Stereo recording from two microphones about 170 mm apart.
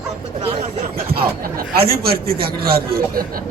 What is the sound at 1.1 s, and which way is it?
A man's voice, 60° right (ahead or behind).